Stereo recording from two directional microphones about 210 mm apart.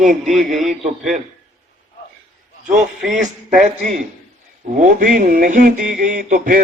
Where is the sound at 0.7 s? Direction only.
35° right (ahead or behind).